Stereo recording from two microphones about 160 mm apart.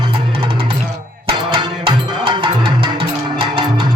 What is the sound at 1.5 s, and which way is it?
Music, 30° right (ahead or behind).